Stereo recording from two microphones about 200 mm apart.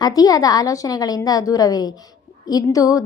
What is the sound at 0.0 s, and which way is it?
A woman's voice, 20° left (ahead or behind).